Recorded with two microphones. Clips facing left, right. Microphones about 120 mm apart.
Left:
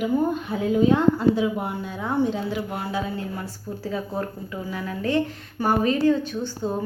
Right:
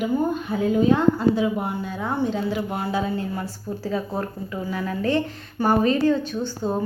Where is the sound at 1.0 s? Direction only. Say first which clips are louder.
Even; 15° left (ahead or behind).